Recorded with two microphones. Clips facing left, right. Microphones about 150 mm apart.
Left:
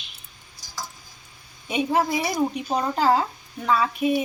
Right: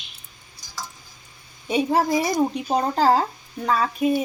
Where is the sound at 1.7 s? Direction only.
35° right (ahead or behind).